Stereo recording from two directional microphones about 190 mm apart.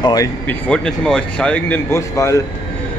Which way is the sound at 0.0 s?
20° left (ahead or behind).